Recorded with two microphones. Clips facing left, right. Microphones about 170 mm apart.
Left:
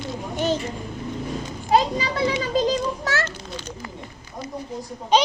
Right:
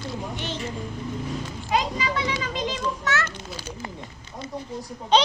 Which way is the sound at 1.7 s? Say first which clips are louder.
Left 5 dB; 35° left (ahead or behind).